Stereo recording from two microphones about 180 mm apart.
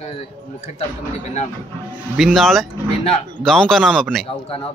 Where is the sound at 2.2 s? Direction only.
Centre (ahead or behind).